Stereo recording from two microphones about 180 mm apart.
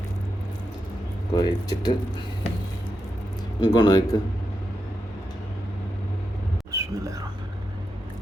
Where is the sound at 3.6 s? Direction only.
25° left (ahead or behind).